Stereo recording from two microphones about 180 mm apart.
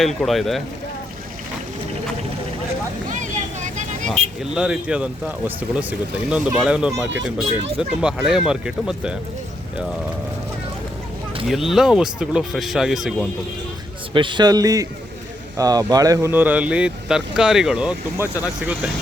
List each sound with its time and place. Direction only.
0.0 s speech: centre (ahead or behind)
3.1 s vehicle: 45° right (ahead or behind)
4.1 s speech: 5° right (ahead or behind)
11.4 s speech: centre (ahead or behind)
14.1 s a man's voice: 25° right (ahead or behind); by 18.9 s 5° right (ahead or behind)